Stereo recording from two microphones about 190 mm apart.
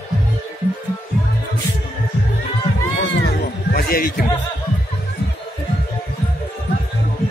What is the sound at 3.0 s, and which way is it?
Music, 55° left (ahead or behind).